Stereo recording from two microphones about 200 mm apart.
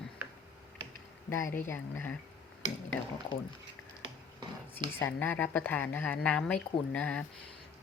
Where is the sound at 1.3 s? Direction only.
15° left (ahead or behind).